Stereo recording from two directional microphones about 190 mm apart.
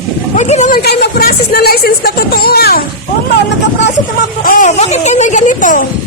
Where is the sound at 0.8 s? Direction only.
60° left (ahead or behind).